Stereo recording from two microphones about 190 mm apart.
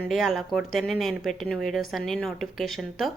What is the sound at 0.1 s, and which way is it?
A woman's voice, centre (ahead or behind).